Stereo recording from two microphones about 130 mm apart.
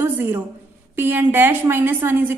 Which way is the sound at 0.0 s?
15° right (ahead or behind).